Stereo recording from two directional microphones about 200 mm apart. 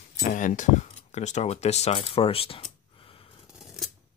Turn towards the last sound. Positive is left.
turn(degrees=0)  # may be behind; listen again after turning